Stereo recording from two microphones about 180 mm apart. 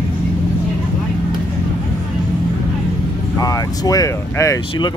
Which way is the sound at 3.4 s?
20° left (ahead or behind).